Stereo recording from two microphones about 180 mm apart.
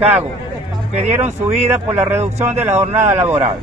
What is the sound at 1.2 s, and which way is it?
Speech, 35° right (ahead or behind).